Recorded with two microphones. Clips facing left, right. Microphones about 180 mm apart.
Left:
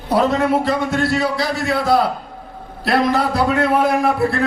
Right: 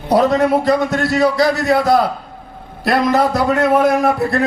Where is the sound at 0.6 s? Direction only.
40° right (ahead or behind).